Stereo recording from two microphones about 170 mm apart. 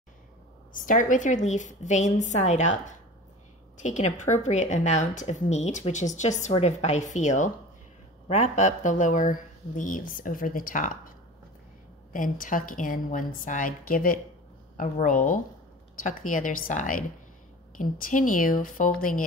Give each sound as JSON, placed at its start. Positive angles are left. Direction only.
{"t": 0.7, "sound": "speech", "side_deg": 50}